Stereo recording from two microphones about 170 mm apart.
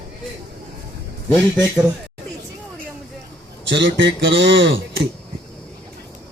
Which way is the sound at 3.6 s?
90° right.